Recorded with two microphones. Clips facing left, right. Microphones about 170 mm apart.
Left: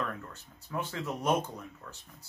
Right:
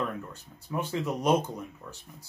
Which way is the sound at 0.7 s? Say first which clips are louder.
Right 5 dB; 15° right (ahead or behind).